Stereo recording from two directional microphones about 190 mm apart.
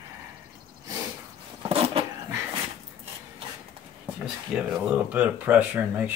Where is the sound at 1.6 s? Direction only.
30° right (ahead or behind).